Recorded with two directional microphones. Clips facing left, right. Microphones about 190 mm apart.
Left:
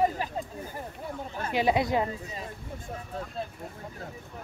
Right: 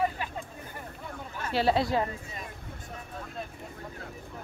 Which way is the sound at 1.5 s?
15° left (ahead or behind).